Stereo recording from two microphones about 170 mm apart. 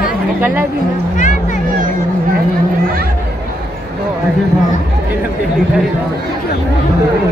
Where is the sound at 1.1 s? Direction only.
45° left (ahead or behind).